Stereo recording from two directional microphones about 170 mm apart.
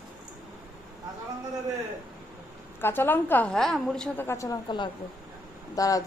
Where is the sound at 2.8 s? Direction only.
10° left (ahead or behind).